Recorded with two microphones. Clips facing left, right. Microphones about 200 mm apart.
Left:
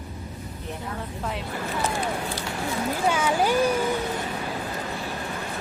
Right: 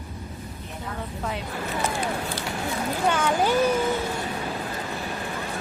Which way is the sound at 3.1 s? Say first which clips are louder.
Right 1 dB; 10° left (ahead or behind).